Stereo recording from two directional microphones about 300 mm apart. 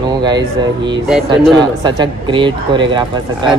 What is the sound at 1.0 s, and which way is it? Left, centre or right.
Speech, centre.